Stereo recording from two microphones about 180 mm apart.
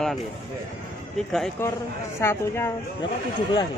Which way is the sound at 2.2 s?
15° left (ahead or behind).